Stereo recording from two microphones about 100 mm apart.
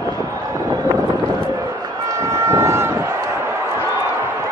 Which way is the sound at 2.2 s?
30° right (ahead or behind).